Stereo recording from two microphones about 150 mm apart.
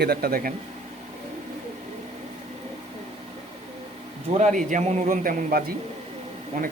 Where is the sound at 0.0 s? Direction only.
90° right.